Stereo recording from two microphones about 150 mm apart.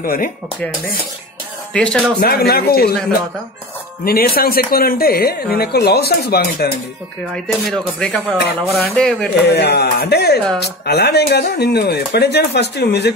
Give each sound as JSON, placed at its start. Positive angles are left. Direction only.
{"t": 0.0, "sound": "speech", "side_deg": 75}
{"t": 1.7, "sound": "speech", "side_deg": 5}
{"t": 2.1, "sound": "a woman's voice", "side_deg": 90}
{"t": 7.3, "sound": "speech", "side_deg": 5}
{"t": 9.5, "sound": "a woman's voice", "side_deg": 90}